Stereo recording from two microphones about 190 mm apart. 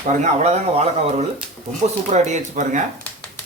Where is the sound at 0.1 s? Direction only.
35° right (ahead or behind).